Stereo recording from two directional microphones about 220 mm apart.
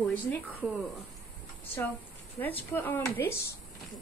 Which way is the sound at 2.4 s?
10° left (ahead or behind).